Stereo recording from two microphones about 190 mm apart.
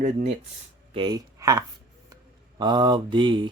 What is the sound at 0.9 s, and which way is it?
Speech, 20° right (ahead or behind).